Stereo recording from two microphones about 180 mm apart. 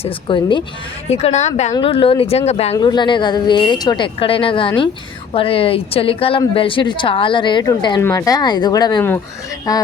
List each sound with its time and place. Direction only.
0.0 s a woman's voice: 25° left (ahead or behind)
1.0 s speech: 35° left (ahead or behind)
2.7 s a woman's voice: 25° left (ahead or behind)